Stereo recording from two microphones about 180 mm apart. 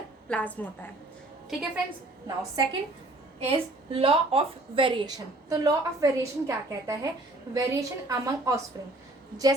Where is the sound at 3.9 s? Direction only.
30° right (ahead or behind).